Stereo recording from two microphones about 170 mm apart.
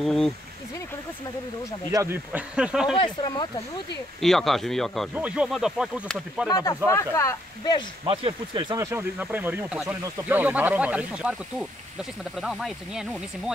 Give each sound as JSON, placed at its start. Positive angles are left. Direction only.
{"t": 0.0, "sound": "speech", "side_deg": 0}
{"t": 1.9, "sound": "speech", "side_deg": -15}
{"t": 3.0, "sound": "speech", "side_deg": 30}
{"t": 4.2, "sound": "speech", "side_deg": 0}
{"t": 6.5, "sound": "speech", "side_deg": 25}
{"t": 8.1, "sound": "speech", "side_deg": -30}
{"t": 8.7, "sound": "speech", "side_deg": -15}